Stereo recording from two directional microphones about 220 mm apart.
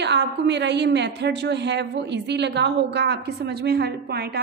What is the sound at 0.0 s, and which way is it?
A woman's voice, 50° right (ahead or behind).